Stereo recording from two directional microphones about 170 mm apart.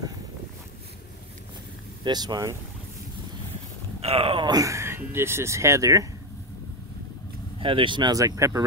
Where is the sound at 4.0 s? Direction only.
35° right (ahead or behind); by 6.0 s 20° right (ahead or behind).